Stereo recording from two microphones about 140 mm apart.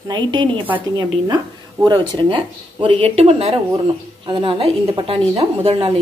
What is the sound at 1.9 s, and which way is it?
A woman's voice, 35° right (ahead or behind).